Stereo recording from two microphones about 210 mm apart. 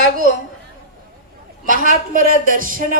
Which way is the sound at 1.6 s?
40° right (ahead or behind).